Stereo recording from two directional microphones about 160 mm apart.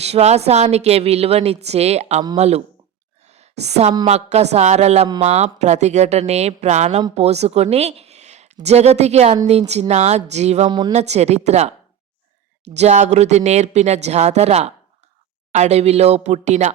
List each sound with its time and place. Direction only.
0.0 s a woman's voice: 40° right (ahead or behind)
3.2 s a sound: 45° right (ahead or behind)
4.0 s speech: 40° right (ahead or behind)
10.7 s speech: 30° right (ahead or behind)
10.9 s speech: 45° right (ahead or behind)